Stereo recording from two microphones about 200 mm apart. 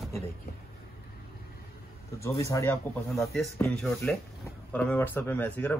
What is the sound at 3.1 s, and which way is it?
Speech, centre (ahead or behind).